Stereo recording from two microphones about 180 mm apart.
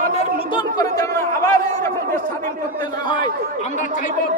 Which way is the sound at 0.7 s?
20° left (ahead or behind).